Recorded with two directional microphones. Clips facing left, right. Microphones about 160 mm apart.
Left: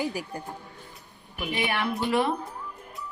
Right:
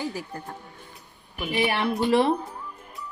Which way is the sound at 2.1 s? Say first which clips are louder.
Right 5 dB; 30° right (ahead or behind).